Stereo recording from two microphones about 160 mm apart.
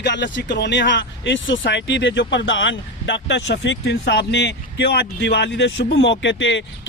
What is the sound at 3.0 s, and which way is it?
A man's voice, 90° left.